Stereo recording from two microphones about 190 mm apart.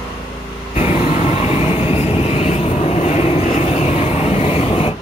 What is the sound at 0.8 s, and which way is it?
Vehicle, 30° left (ahead or behind).